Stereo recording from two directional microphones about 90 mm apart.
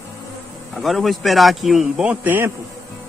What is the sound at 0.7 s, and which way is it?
A man's voice, centre (ahead or behind).